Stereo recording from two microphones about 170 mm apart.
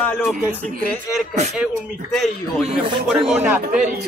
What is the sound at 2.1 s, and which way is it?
Speech, centre (ahead or behind).